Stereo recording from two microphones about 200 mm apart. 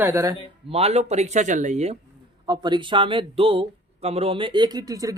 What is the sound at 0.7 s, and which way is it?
Speech, 30° right (ahead or behind).